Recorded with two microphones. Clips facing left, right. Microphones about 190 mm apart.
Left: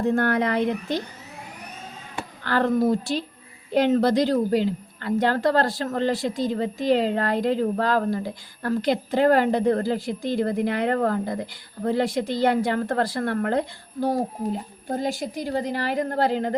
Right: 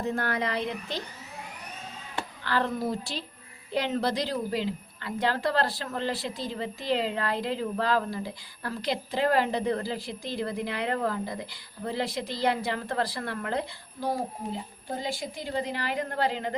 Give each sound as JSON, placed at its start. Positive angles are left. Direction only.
{"t": 0.0, "sound": "a woman's voice", "side_deg": 55}
{"t": 2.4, "sound": "a woman's voice", "side_deg": 50}